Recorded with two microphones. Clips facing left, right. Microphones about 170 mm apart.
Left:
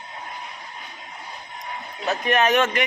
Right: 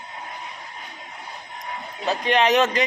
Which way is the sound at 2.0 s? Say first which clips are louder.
Right 1 dB; 25° right (ahead or behind).